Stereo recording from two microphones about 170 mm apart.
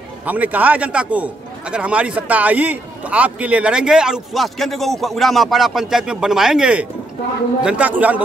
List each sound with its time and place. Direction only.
0.2 s a man's voice: 10° right (ahead or behind)